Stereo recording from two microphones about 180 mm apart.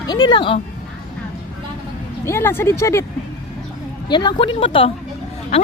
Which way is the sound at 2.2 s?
15° left (ahead or behind).